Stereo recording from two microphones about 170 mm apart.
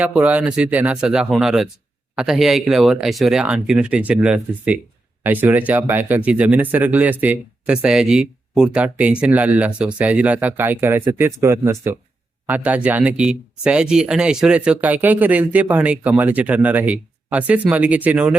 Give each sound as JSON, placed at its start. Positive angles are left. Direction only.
{"t": 0.0, "sound": "speech", "side_deg": -10}